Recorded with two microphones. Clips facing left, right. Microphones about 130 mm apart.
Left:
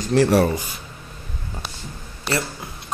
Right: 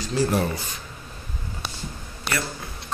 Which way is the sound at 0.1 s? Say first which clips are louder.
Left 7 dB; 80° left.